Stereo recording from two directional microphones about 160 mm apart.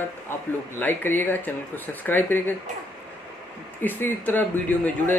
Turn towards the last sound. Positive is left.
turn(degrees=10)  # may be behind; listen again after turning